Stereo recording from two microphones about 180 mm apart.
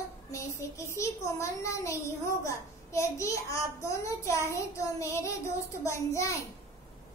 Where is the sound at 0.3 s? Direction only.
15° left (ahead or behind).